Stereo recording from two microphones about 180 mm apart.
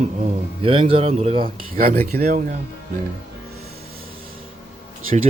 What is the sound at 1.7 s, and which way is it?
Speech, 50° right (ahead or behind).